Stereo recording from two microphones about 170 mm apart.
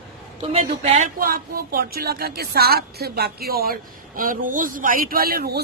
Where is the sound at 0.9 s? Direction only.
55° right (ahead or behind).